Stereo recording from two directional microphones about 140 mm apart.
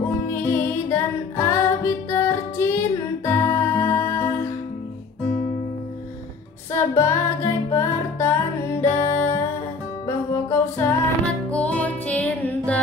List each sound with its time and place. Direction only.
0.3 s music: 20° left (ahead or behind)
6.7 s music: 20° left (ahead or behind)